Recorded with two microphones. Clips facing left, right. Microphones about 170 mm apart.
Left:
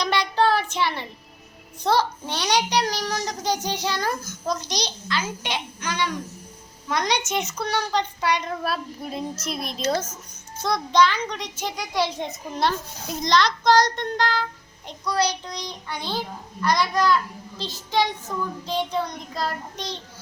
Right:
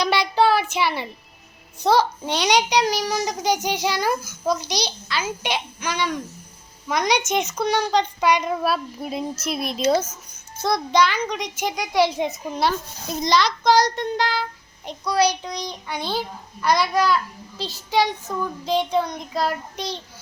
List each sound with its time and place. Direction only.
0.0 s child singing: 10° right (ahead or behind)
1.8 s a child's voice: 15° right (ahead or behind)
13.2 s child singing: 5° right (ahead or behind)
15.0 s a child's voice: 10° right (ahead or behind)